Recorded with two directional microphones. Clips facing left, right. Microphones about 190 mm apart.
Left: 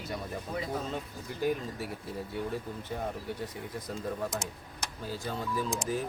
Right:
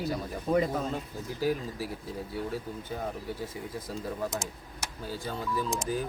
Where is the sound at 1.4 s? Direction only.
5° right (ahead or behind).